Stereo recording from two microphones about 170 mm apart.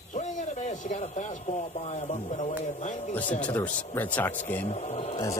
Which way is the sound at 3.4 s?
5° left (ahead or behind).